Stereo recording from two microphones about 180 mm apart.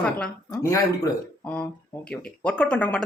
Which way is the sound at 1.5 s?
5° left (ahead or behind).